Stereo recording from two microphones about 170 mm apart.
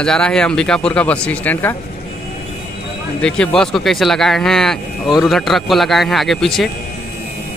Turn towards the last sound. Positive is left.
turn(degrees=0)  # may be behind; listen again after turning